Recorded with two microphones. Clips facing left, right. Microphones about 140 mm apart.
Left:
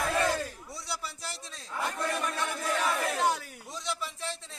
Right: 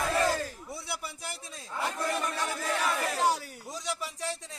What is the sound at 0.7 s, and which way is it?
Speech, 55° right (ahead or behind).